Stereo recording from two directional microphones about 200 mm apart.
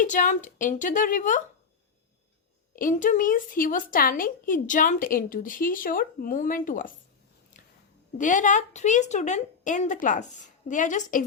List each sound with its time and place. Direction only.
0.0 s a woman's voice: 40° left (ahead or behind)
2.7 s a woman's voice: 40° left (ahead or behind)
8.2 s a woman's voice: 40° left (ahead or behind)